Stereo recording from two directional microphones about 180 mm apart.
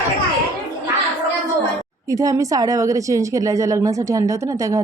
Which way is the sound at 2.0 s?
20° right (ahead or behind).